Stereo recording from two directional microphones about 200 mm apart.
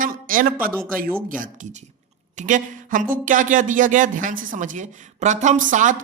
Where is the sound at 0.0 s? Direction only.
45° right (ahead or behind).